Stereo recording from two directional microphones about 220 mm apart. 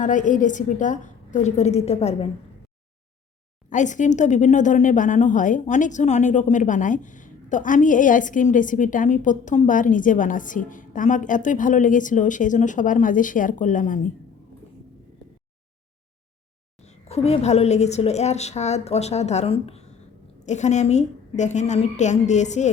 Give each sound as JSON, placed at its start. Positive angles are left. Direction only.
{"t": 0.0, "sound": "speech", "side_deg": 35}
{"t": 3.7, "sound": "speech", "side_deg": 35}
{"t": 16.8, "sound": "a woman's voice", "side_deg": 30}